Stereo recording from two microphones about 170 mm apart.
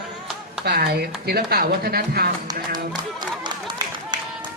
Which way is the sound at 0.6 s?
65° right (ahead or behind).